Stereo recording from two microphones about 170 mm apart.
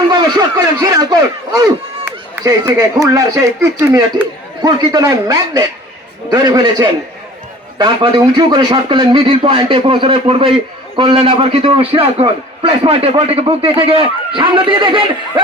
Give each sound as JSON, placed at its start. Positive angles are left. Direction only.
{"t": 0.1, "sound": "speech", "side_deg": -25}
{"t": 4.6, "sound": "a man's voice", "side_deg": -25}